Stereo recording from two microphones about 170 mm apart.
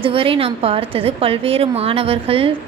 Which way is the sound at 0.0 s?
30° right (ahead or behind).